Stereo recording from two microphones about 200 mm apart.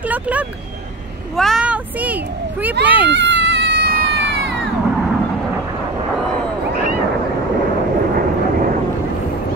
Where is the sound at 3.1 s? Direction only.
65° right (ahead or behind).